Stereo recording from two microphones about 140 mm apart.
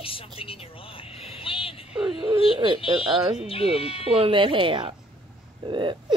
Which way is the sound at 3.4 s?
40° left (ahead or behind).